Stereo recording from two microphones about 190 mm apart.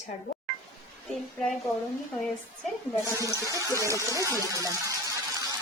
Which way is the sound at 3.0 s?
15° right (ahead or behind).